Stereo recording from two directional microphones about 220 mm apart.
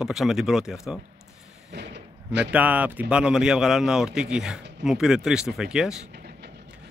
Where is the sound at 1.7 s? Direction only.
50° right (ahead or behind).